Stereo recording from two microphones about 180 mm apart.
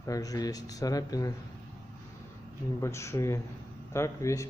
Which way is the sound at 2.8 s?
15° left (ahead or behind).